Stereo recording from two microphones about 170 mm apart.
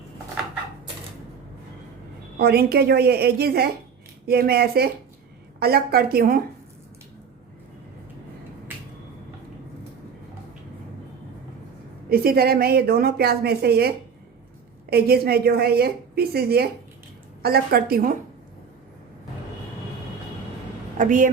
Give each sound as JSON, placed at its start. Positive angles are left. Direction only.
{"t": 2.4, "sound": "a woman's voice", "side_deg": -65}
{"t": 12.0, "sound": "a woman's voice", "side_deg": -60}
{"t": 21.0, "sound": "a woman's voice", "side_deg": -50}